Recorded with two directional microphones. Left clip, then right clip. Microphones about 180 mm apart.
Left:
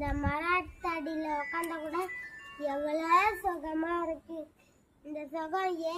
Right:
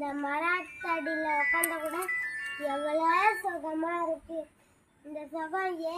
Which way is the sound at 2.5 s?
25° left (ahead or behind).